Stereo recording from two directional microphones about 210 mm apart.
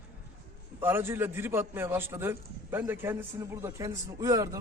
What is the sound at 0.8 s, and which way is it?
A man's voice, 10° right (ahead or behind).